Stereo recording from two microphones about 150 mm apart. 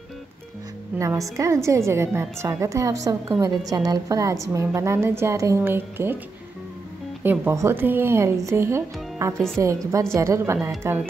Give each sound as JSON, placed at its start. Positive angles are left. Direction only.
{"t": 0.9, "sound": "a woman's voice", "side_deg": -20}
{"t": 7.2, "sound": "a woman's voice", "side_deg": -15}